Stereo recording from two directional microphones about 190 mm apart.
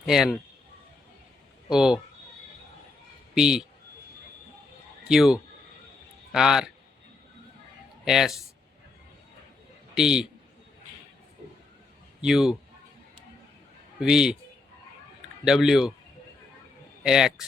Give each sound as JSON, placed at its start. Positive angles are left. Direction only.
{"t": 0.0, "sound": "a man's voice", "side_deg": 0}
{"t": 1.7, "sound": "a man's voice", "side_deg": -5}
{"t": 3.3, "sound": "a man's voice", "side_deg": -5}
{"t": 5.0, "sound": "a man's voice", "side_deg": 0}
{"t": 8.0, "sound": "a man's voice", "side_deg": 0}
{"t": 9.9, "sound": "a man's voice", "side_deg": -5}
{"t": 12.2, "sound": "a man's voice", "side_deg": -5}
{"t": 14.0, "sound": "a man's voice", "side_deg": -5}
{"t": 15.4, "sound": "a man's voice", "side_deg": 0}
{"t": 17.0, "sound": "speech", "side_deg": -5}